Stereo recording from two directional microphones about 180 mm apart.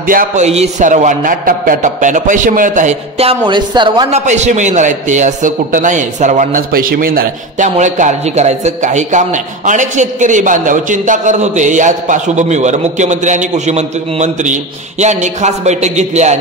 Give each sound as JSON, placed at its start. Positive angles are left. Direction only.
{"t": 0.0, "sound": "a man's voice", "side_deg": -50}
{"t": 0.5, "sound": "a man's voice", "side_deg": -40}
{"t": 4.1, "sound": "a man's voice", "side_deg": -40}